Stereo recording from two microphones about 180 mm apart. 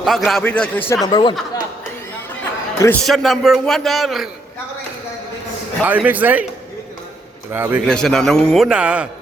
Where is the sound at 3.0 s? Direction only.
Centre (ahead or behind).